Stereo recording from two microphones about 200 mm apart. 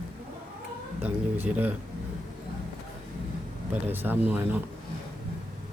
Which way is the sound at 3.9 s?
10° right (ahead or behind).